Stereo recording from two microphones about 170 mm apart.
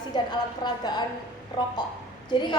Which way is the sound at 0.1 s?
25° left (ahead or behind).